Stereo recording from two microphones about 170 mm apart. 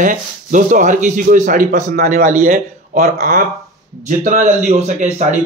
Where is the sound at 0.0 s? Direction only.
50° right (ahead or behind).